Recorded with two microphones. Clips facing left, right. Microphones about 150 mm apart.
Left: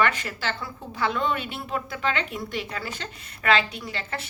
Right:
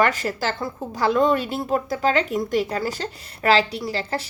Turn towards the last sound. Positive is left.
turn(degrees=-35)  # may be behind; listen again after turning